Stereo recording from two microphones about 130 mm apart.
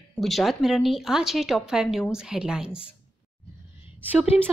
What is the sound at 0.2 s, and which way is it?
Speech, centre (ahead or behind).